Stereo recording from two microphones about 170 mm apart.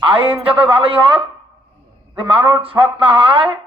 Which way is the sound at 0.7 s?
30° right (ahead or behind).